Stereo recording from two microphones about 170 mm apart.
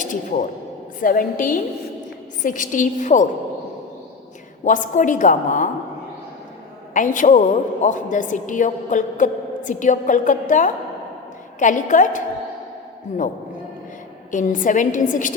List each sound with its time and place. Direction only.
0.0 s a woman's voice: 50° left (ahead or behind)
4.6 s a woman's voice: 50° left (ahead or behind)
6.9 s a woman's voice: 50° left (ahead or behind)
14.3 s a woman's voice: 50° left (ahead or behind)